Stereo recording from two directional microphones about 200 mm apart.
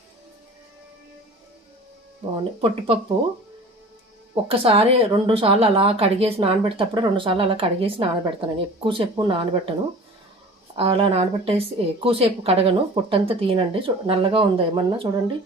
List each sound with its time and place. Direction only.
2.6 s a woman's voice: 30° right (ahead or behind)
4.4 s a woman's voice: 30° right (ahead or behind)
10.8 s a woman's voice: 25° right (ahead or behind)